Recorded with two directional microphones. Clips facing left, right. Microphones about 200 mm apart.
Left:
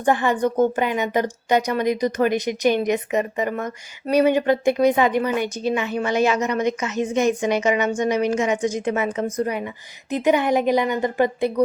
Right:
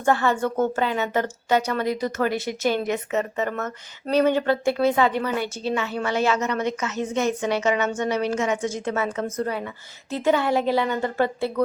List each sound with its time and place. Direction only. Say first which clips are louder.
0.0 s a woman's voice: left 2 dB; 15° left (ahead or behind)